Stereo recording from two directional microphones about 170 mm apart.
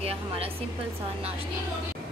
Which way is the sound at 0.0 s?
35° right (ahead or behind).